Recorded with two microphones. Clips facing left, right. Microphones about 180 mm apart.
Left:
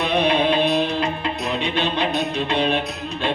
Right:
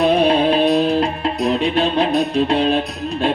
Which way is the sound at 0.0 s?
35° right (ahead or behind).